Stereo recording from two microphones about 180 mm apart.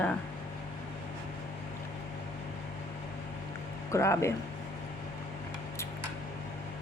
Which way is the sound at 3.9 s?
15° left (ahead or behind).